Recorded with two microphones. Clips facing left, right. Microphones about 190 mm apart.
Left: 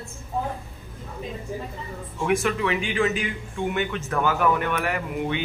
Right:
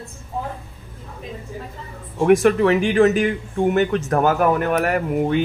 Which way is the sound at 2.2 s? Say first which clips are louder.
Right 9 dB; 50° right (ahead or behind).